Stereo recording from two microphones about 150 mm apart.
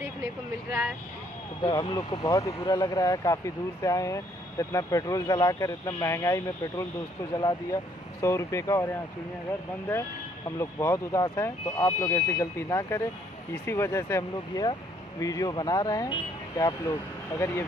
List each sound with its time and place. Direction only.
0.0 s speech: 15° right (ahead or behind)
1.6 s speech: 30° left (ahead or behind)
10.6 s speech: 20° left (ahead or behind)